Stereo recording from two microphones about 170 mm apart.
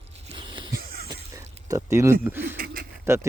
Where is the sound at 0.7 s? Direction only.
60° right (ahead or behind).